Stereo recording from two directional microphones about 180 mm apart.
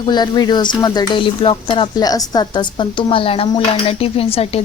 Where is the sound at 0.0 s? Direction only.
25° left (ahead or behind).